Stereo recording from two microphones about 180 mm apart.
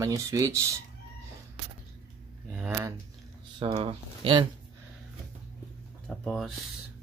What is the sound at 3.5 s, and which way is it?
Speech, 30° right (ahead or behind).